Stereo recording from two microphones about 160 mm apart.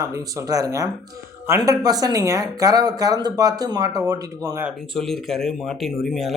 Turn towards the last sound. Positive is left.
turn(degrees=0)  # may be behind; listen again after turning